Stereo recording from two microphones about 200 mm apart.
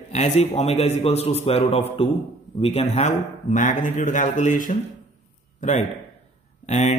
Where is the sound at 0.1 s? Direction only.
35° left (ahead or behind).